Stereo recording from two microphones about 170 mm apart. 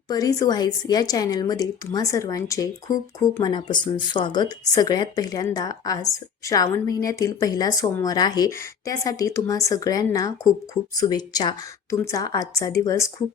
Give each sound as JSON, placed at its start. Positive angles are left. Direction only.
{"t": 0.1, "sound": "speech", "side_deg": 20}